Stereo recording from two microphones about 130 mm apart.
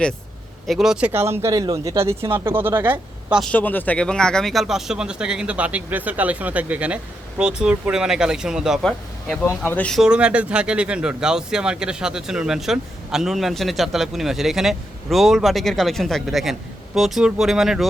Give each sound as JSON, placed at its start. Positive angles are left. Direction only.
{"t": 0.7, "sound": "speech", "side_deg": -5}
{"t": 1.1, "sound": "speech", "side_deg": -20}
{"t": 3.4, "sound": "speech", "side_deg": 10}
{"t": 9.9, "sound": "speech", "side_deg": -5}